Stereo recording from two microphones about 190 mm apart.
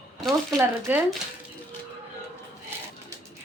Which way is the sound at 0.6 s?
10° right (ahead or behind).